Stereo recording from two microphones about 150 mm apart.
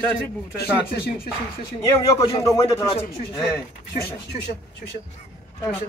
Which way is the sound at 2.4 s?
20° left (ahead or behind).